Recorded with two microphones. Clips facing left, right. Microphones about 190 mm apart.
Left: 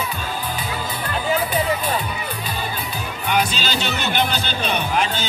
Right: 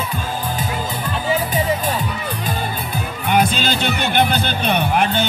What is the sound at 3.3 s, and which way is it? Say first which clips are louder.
Music: right 4 dB; 55° right (ahead or behind).